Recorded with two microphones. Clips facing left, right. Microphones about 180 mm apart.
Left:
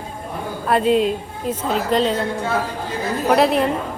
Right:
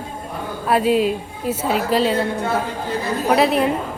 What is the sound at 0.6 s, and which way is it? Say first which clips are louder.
A woman's voice: even; 5° right (ahead or behind).